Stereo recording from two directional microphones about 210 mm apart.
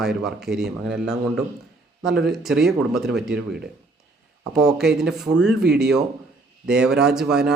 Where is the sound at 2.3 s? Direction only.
Centre (ahead or behind).